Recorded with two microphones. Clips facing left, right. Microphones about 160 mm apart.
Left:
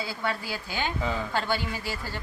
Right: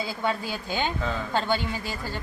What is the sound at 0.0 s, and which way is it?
A woman's voice, 20° right (ahead or behind).